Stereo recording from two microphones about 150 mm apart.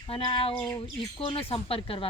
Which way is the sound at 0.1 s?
40° left (ahead or behind).